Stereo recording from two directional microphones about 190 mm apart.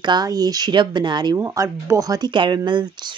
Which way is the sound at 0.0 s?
20° right (ahead or behind).